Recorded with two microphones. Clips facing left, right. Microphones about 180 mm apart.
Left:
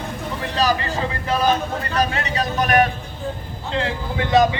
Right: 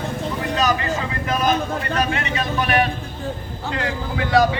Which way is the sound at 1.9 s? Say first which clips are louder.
Left 2 dB; 35° left (ahead or behind).